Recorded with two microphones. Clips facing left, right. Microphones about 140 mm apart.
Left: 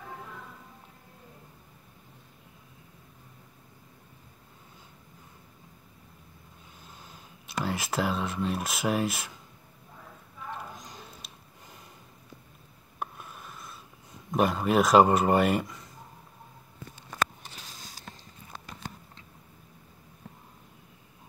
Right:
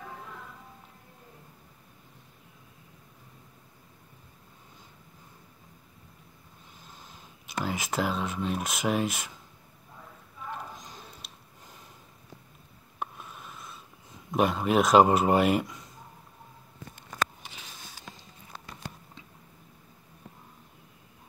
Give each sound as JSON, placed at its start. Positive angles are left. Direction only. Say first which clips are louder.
{"t": 6.9, "sound": "speech", "louder": "even", "side_deg": 0}
{"t": 10.5, "sound": "clip-clop", "louder": "even", "side_deg": 0}
{"t": 13.0, "sound": "rub", "louder": "even", "side_deg": 0}
{"t": 14.3, "sound": "speech", "louder": "even", "side_deg": 0}